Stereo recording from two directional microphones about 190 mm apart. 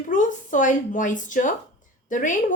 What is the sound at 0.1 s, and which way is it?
A woman's voice, 40° left (ahead or behind).